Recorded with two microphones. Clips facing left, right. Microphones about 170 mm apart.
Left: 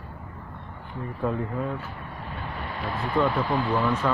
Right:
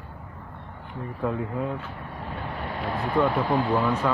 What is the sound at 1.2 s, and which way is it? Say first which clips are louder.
Speech: even; 5° right (ahead or behind).